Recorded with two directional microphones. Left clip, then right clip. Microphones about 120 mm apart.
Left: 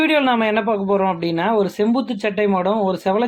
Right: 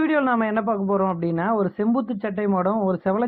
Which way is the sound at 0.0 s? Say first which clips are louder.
Left 4 dB; 20° left (ahead or behind).